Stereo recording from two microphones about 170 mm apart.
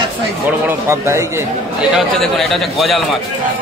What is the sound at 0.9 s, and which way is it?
Speech, 15° right (ahead or behind).